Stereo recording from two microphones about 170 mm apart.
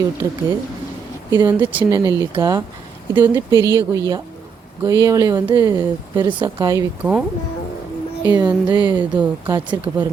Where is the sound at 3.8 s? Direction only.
20° right (ahead or behind).